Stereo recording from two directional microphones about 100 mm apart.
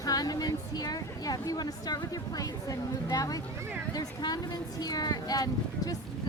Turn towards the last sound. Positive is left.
turn(degrees=40)  # may be behind; listen again after turning